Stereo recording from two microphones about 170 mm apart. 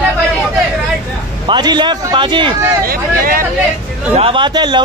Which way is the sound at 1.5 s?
25° right (ahead or behind).